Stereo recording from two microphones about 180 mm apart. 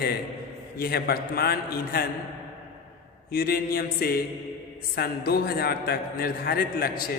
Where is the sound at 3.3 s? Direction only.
55° left (ahead or behind).